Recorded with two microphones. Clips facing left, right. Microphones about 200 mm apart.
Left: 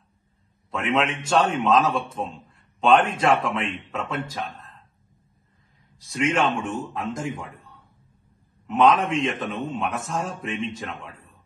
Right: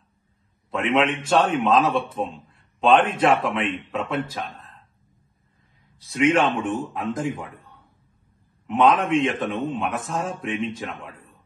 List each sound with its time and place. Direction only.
0.7 s a man's voice: centre (ahead or behind)
3.1 s a man's voice: 30° right (ahead or behind)
3.4 s a man's voice: centre (ahead or behind)
6.1 s a man's voice: 5° right (ahead or behind)
8.8 s a man's voice: centre (ahead or behind)